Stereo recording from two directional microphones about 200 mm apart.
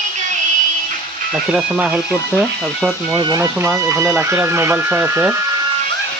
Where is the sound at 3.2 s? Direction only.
15° right (ahead or behind).